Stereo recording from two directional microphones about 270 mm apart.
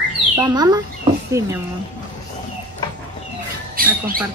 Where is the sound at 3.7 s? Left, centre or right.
Right.